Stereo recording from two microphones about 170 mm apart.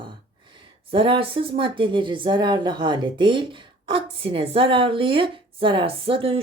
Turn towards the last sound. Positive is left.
turn(degrees=-35)  # may be behind; listen again after turning